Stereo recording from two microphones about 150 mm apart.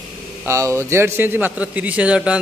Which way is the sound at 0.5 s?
20° right (ahead or behind).